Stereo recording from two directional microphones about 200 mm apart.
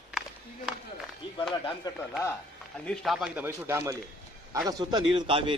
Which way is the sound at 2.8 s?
5° left (ahead or behind).